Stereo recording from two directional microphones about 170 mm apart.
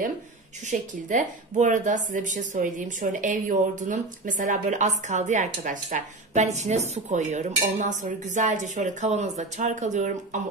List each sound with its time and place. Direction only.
0.7 s a woman's voice: 45° right (ahead or behind)